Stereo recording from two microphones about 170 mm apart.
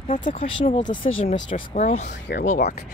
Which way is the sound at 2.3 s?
65° left (ahead or behind).